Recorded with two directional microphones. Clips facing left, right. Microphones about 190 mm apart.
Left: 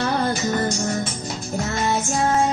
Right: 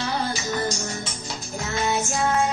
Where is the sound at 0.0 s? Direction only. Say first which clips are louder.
Left 5 dB; 55° left (ahead or behind).